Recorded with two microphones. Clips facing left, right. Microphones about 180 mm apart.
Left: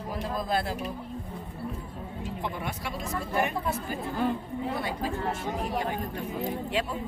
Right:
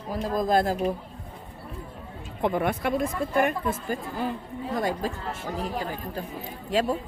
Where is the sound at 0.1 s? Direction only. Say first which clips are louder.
Right 6 dB; 45° right (ahead or behind).